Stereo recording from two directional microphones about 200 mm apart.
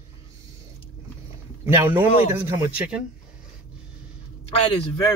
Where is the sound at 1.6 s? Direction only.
10° right (ahead or behind).